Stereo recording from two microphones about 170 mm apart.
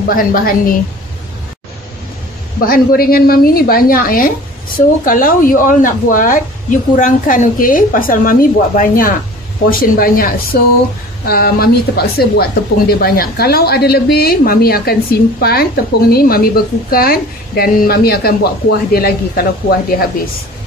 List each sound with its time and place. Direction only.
0.1 s speech: 55° left (ahead or behind)
2.6 s speech: 60° left (ahead or behind)